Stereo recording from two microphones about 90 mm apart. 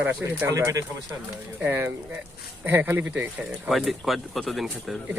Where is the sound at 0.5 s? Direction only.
40° right (ahead or behind).